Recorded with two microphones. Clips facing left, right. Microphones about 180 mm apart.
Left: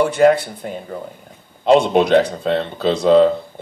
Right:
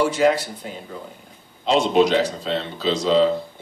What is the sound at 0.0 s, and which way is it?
Speech, 55° left (ahead or behind).